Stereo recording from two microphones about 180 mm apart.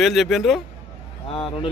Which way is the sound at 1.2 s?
30° left (ahead or behind).